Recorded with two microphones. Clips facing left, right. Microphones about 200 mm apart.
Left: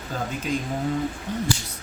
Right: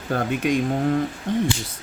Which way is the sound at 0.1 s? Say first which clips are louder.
Right 6 dB; 60° right (ahead or behind).